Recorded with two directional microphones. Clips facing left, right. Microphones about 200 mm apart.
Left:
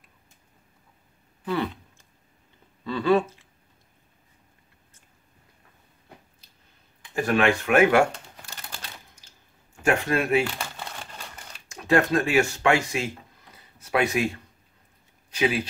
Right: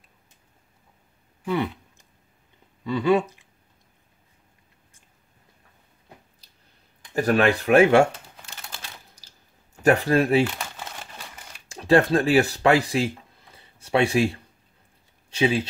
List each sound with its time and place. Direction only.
1.4 s a sound: 15° right (ahead or behind)
2.8 s speech: 15° right (ahead or behind)
7.0 s speech: 40° right (ahead or behind)
9.8 s speech: 35° right (ahead or behind)
10.4 s crumpling: centre (ahead or behind)
11.7 s speech: 30° right (ahead or behind)